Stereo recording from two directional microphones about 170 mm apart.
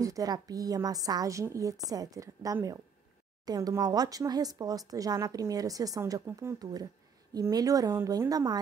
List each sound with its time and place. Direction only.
0.0 s speech: 20° right (ahead or behind)